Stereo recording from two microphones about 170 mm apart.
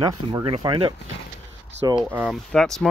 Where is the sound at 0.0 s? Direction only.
20° right (ahead or behind).